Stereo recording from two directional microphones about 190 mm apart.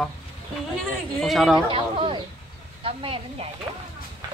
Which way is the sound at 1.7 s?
30° right (ahead or behind).